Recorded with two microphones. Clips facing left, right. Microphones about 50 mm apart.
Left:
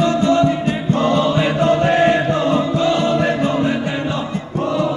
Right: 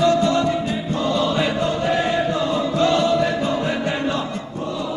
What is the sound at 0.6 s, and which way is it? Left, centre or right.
Music, left.